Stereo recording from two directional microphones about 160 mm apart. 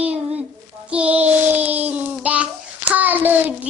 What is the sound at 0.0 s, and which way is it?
Child singing, 10° right (ahead or behind).